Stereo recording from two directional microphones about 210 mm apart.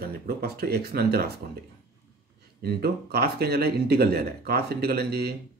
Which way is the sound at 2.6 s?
50° right (ahead or behind).